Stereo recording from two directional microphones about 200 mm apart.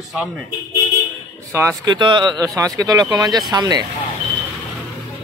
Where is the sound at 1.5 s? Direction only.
15° right (ahead or behind).